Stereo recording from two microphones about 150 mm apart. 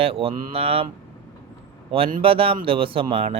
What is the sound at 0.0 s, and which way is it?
Speech, 40° right (ahead or behind).